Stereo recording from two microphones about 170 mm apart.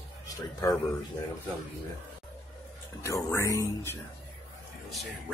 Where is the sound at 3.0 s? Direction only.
15° left (ahead or behind).